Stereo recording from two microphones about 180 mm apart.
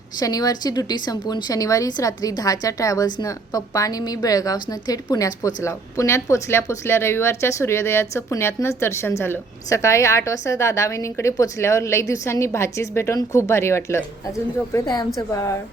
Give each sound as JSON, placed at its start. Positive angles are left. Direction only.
{"t": 0.2, "sound": "a woman's voice", "side_deg": 20}